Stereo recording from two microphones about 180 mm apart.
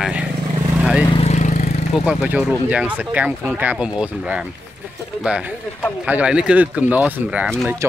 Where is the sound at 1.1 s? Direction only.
35° left (ahead or behind).